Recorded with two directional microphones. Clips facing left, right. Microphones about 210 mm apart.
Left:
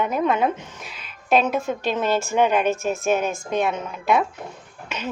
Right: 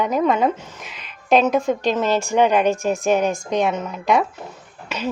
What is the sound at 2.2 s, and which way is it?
A woman's voice, 15° right (ahead or behind).